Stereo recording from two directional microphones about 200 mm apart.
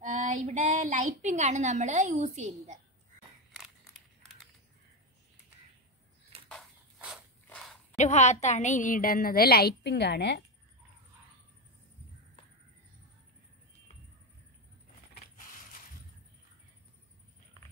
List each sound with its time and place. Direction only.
0.0 s a woman's voice: 40° right (ahead or behind)
6.5 s a sound: centre (ahead or behind)
8.0 s a woman's voice: 35° left (ahead or behind); by 10.4 s 55° left (ahead or behind)